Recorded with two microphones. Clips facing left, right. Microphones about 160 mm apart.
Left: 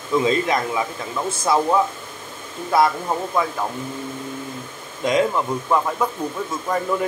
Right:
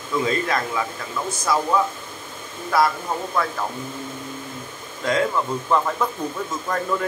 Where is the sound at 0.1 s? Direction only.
20° left (ahead or behind).